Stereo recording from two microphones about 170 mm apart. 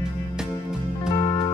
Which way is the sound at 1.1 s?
30° left (ahead or behind).